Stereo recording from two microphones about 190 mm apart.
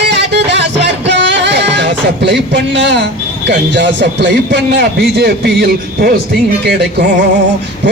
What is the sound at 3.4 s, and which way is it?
A man's voice, 65° right (ahead or behind).